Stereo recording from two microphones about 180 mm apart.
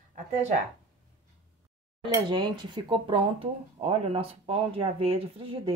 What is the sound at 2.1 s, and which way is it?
Speech, 25° right (ahead or behind).